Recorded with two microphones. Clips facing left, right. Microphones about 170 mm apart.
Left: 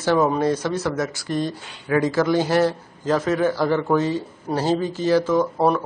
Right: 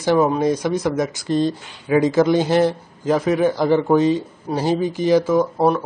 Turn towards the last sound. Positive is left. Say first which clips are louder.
# right 2 dB
turn(degrees=-10)  # may be behind; listen again after turning